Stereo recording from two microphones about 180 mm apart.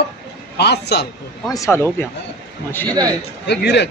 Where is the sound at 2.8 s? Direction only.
20° right (ahead or behind).